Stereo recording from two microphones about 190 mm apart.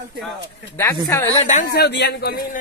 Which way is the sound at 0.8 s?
15° left (ahead or behind).